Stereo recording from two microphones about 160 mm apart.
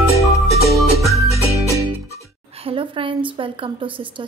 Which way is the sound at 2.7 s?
35° right (ahead or behind).